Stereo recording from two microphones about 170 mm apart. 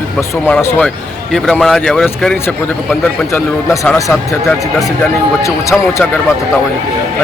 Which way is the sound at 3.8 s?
5° left (ahead or behind).